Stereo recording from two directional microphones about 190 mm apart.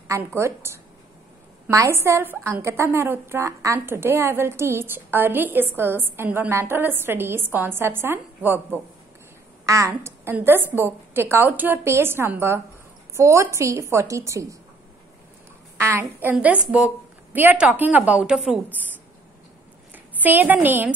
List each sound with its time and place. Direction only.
0.1 s a woman's voice: 15° right (ahead or behind)
15.8 s a woman's voice: 10° right (ahead or behind)
19.9 s a woman's voice: 10° right (ahead or behind)